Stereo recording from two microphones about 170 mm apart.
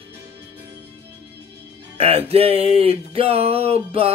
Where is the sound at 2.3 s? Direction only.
35° right (ahead or behind).